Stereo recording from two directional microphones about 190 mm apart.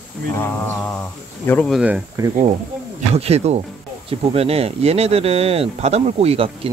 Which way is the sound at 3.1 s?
35° right (ahead or behind).